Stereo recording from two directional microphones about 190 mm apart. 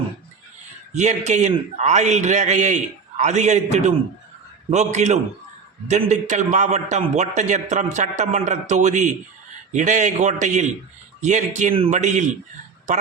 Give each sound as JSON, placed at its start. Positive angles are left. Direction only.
{"t": 0.9, "sound": "a man's voice", "side_deg": -35}